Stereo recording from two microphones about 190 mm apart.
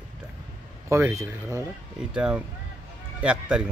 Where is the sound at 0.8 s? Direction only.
15° right (ahead or behind).